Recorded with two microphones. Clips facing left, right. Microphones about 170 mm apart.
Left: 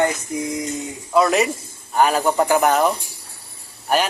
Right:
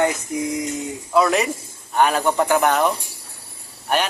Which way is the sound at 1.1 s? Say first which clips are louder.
Left 1 dB; centre (ahead or behind).